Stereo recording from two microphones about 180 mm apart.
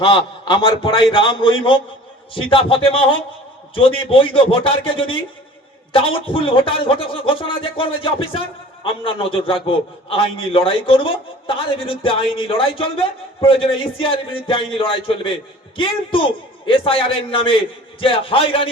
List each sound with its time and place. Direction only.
0.0 s a man's voice: 30° left (ahead or behind)
6.1 s a man's voice: 30° left (ahead or behind)